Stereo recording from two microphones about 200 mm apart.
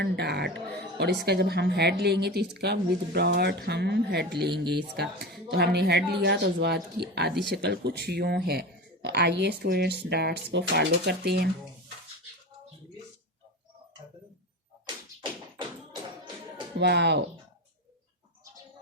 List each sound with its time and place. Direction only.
0.0 s a woman's voice: 55° right (ahead or behind)
15.9 s music: 20° right (ahead or behind)
16.7 s a woman's voice: 60° right (ahead or behind)